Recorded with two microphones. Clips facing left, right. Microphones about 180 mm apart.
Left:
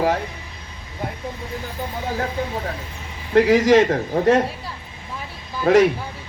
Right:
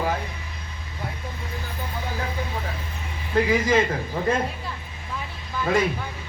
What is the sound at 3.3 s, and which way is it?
Speech, 75° left (ahead or behind).